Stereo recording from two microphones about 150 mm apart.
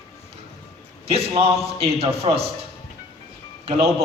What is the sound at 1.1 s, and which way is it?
A man's voice, 40° right (ahead or behind).